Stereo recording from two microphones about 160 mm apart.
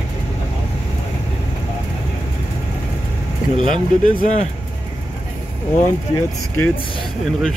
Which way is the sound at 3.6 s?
55° left (ahead or behind).